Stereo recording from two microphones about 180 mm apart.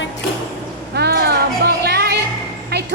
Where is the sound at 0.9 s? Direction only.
65° right (ahead or behind).